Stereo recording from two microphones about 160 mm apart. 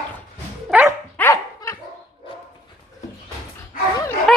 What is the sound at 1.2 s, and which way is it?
Dog, 15° left (ahead or behind).